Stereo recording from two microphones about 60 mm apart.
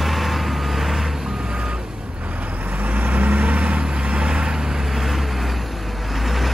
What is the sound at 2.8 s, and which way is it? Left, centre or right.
Vehicle, right.